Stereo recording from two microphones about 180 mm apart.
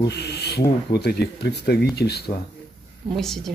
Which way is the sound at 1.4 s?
65° left (ahead or behind).